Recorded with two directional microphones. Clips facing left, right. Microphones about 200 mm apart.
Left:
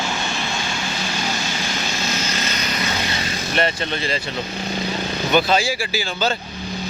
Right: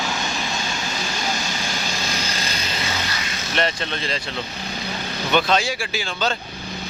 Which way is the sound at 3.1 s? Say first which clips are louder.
Left 4 dB; 30° left (ahead or behind).